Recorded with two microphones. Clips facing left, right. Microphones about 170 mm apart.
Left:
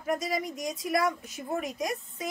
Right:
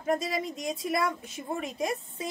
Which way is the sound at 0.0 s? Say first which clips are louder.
Right 1 dB; 25° right (ahead or behind).